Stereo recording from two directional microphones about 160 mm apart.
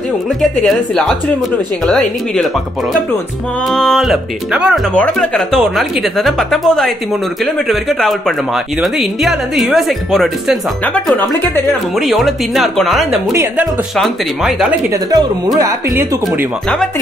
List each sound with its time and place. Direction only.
1.9 s a woman's voice: 5° left (ahead or behind)
3.7 s a woman's voice: centre (ahead or behind)
4.9 s a woman's voice: 5° left (ahead or behind)
11.6 s a woman's voice: centre (ahead or behind)
13.3 s speech: 15° right (ahead or behind)
13.9 s a woman's voice: centre (ahead or behind)
15.0 s speech: 25° right (ahead or behind)